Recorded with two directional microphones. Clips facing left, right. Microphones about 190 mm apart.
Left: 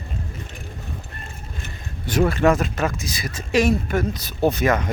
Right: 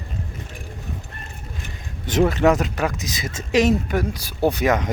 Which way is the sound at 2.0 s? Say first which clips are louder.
Right 1 dB; 20° right (ahead or behind).